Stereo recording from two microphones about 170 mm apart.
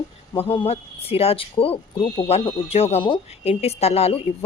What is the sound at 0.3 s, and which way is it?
Speech, 30° left (ahead or behind).